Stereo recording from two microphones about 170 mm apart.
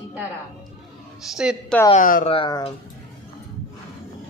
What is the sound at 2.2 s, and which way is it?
Speech, 30° left (ahead or behind).